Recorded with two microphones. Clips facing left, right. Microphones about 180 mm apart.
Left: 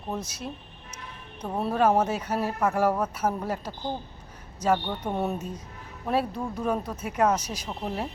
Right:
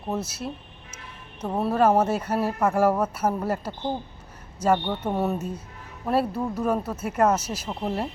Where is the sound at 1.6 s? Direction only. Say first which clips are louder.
Right 2 dB; 5° right (ahead or behind).